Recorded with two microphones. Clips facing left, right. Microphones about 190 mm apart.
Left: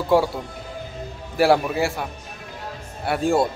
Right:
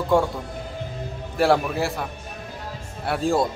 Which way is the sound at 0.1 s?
Centre (ahead or behind).